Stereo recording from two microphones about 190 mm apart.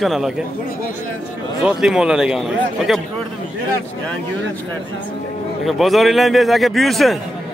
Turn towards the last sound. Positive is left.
turn(degrees=0)  # may be behind; listen again after turning